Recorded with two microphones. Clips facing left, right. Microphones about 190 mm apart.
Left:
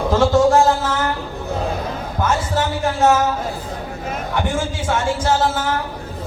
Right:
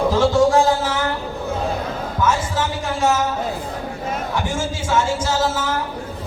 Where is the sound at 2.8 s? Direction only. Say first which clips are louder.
Left 4 dB; 60° left (ahead or behind).